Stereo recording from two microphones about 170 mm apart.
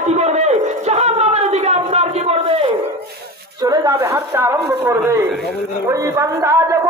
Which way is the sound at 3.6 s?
20° right (ahead or behind).